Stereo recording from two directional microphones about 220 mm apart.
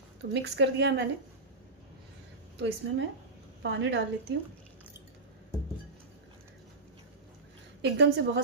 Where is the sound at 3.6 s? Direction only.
55° right (ahead or behind).